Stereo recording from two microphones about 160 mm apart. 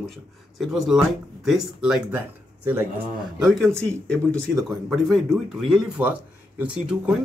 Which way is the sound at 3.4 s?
Centre (ahead or behind).